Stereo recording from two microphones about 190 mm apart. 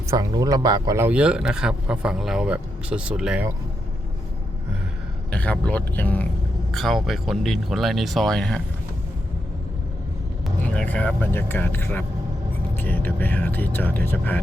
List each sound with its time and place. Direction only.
0.1 s speech: 20° right (ahead or behind)
5.3 s speech: 5° left (ahead or behind)
10.4 s speech: 5° left (ahead or behind)